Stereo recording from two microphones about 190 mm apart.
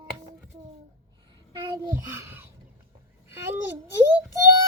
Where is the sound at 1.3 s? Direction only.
25° right (ahead or behind).